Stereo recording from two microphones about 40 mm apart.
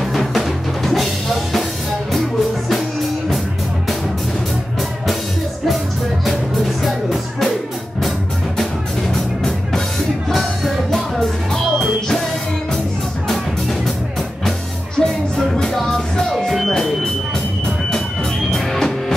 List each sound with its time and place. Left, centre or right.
0.1 s music: centre
6.8 s music: centre
9.1 s music: centre
10.9 s music: centre
15.0 s music: centre
16.7 s a sound: centre
18.7 s music: centre